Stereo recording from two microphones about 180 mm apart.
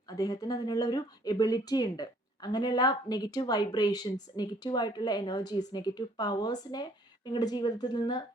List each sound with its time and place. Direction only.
0.1 s speech: 20° left (ahead or behind)